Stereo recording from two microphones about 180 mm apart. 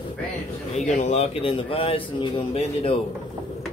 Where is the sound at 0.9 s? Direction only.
40° left (ahead or behind).